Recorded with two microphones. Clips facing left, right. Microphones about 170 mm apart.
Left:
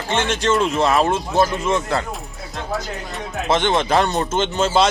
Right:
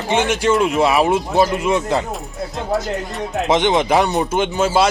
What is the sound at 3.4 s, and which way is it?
Speech, 15° right (ahead or behind).